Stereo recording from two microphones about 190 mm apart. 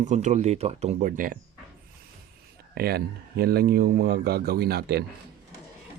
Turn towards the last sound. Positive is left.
turn(degrees=-55)  # may be behind; listen again after turning